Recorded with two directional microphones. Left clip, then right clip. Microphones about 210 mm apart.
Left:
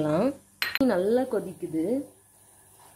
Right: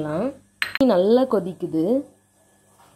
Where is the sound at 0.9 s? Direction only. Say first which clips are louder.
Right 8 dB; 10° right (ahead or behind).